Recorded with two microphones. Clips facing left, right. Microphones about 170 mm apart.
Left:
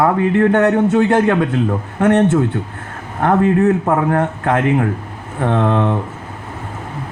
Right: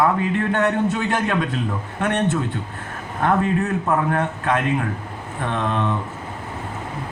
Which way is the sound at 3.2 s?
60° left (ahead or behind).